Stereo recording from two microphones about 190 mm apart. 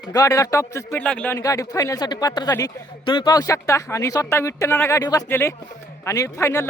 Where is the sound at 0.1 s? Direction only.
20° left (ahead or behind).